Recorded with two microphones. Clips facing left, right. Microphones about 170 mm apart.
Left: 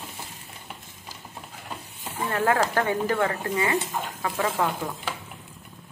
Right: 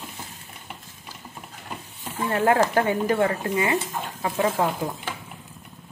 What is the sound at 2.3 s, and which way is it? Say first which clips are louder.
Speech: right 3 dB; 20° right (ahead or behind).